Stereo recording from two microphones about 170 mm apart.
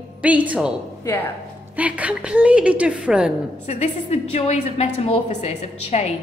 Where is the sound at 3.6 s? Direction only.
40° left (ahead or behind).